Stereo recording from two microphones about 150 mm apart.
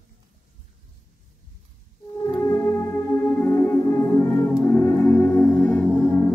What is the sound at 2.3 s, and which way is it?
Music, 15° left (ahead or behind).